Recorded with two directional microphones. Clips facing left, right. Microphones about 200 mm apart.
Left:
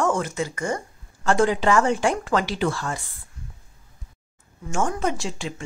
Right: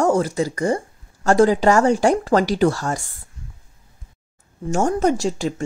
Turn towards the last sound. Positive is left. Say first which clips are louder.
# right 9 dB
turn(degrees=-40)  # may be behind; listen again after turning